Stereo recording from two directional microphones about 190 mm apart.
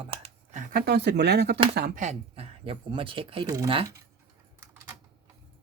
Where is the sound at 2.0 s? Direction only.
30° right (ahead or behind).